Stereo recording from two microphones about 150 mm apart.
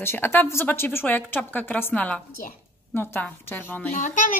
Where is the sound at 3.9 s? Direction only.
60° left (ahead or behind).